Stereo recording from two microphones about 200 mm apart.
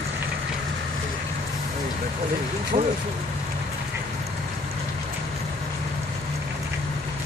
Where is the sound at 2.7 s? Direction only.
30° right (ahead or behind).